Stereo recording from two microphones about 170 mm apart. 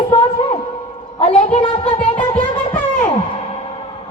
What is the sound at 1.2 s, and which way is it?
Speech, 40° left (ahead or behind).